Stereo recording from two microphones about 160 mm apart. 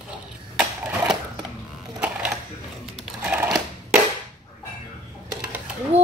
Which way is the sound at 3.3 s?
10° right (ahead or behind).